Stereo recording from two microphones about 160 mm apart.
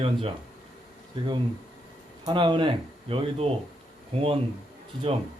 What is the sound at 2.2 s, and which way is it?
Speech, 30° right (ahead or behind).